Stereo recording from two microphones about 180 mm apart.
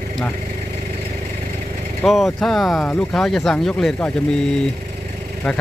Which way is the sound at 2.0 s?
Centre (ahead or behind).